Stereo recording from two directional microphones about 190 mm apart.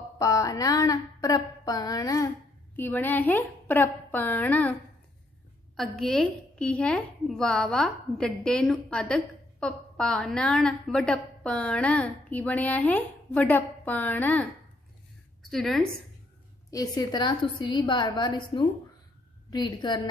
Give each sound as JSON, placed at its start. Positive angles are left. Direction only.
{"t": 0.2, "sound": "a woman's voice", "side_deg": 15}
{"t": 5.8, "sound": "a woman's voice", "side_deg": 0}
{"t": 15.5, "sound": "a woman's voice", "side_deg": 0}
{"t": 16.7, "sound": "a woman's voice", "side_deg": 20}